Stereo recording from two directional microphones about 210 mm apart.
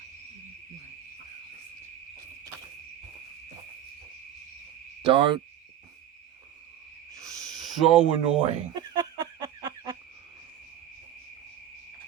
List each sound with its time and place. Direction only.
5.0 s cricket: 25° right (ahead or behind)
7.2 s owl: 15° right (ahead or behind)
7.9 s a sound: 25° right (ahead or behind)